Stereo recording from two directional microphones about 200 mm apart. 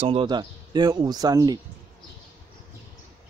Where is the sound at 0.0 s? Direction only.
25° right (ahead or behind).